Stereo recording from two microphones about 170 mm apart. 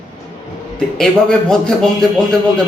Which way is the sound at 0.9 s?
5° left (ahead or behind).